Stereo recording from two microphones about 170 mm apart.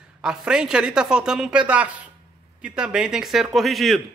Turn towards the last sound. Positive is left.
turn(degrees=0)  # may be behind; listen again after turning